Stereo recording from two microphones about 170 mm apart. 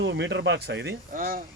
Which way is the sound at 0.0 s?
90° right.